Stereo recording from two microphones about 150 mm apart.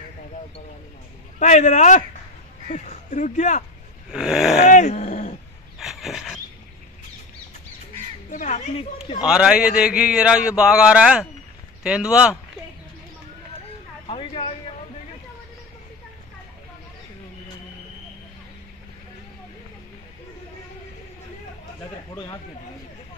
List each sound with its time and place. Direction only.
1.4 s speech: 50° left (ahead or behind)
4.1 s a man's voice: 5° right (ahead or behind)
4.6 s dog: 55° left (ahead or behind)
5.8 s a sound: centre (ahead or behind)
8.3 s speech: 55° left (ahead or behind)
9.2 s a man's voice: 5° right (ahead or behind)
14.0 s a sound: 40° left (ahead or behind)